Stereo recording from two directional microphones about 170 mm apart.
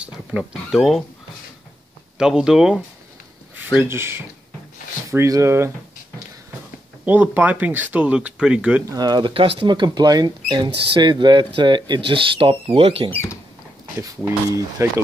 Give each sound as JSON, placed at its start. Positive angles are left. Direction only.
{"t": 0.0, "sound": "speech", "side_deg": -5}
{"t": 2.1, "sound": "speech", "side_deg": -5}
{"t": 7.1, "sound": "speech", "side_deg": -10}
{"t": 8.8, "sound": "speech", "side_deg": -20}
{"t": 13.9, "sound": "speech", "side_deg": -15}